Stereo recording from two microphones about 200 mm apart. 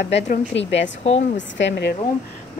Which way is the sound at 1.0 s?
35° left (ahead or behind).